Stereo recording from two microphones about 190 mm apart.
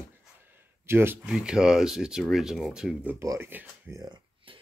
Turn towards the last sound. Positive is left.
turn(degrees=-25)  # may be behind; listen again after turning